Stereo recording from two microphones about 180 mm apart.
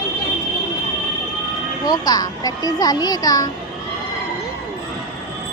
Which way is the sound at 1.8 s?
20° left (ahead or behind).